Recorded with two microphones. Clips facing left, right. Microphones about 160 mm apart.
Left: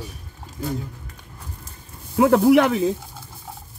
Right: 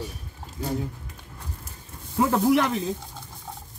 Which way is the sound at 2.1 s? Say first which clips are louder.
Left 6 dB; 65° left (ahead or behind).